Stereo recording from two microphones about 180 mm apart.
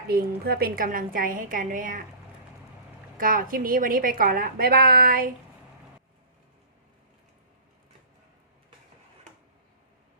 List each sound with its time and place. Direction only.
0.1 s a woman's voice: 60° right (ahead or behind)
3.2 s a woman's voice: 50° right (ahead or behind)